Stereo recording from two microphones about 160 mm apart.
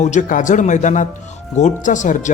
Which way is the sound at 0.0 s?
50° left (ahead or behind).